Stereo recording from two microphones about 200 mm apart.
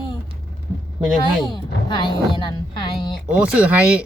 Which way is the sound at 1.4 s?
20° left (ahead or behind).